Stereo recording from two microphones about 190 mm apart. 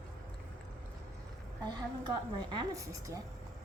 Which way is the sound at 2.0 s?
20° right (ahead or behind).